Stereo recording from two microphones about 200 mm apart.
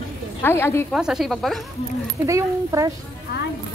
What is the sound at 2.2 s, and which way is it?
Speech, 15° right (ahead or behind).